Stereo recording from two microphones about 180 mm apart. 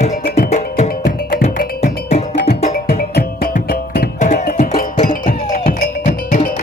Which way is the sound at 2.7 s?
55° left (ahead or behind).